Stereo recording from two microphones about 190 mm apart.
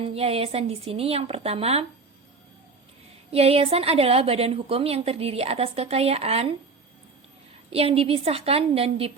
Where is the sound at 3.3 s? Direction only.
30° right (ahead or behind).